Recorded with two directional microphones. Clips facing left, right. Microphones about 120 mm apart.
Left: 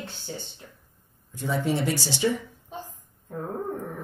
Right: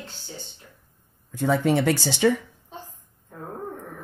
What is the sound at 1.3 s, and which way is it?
Speech, 70° right (ahead or behind).